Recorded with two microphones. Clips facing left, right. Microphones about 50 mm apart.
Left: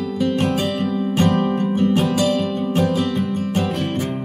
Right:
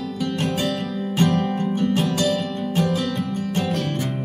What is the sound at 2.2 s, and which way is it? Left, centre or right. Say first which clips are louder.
Music: left 3 dB; centre.